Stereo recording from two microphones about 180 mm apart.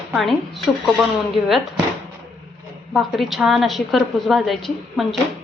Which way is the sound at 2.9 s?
Centre (ahead or behind).